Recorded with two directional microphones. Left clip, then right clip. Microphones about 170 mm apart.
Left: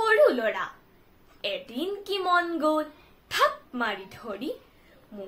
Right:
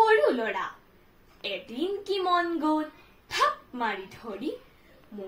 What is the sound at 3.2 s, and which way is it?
Speech, 15° left (ahead or behind).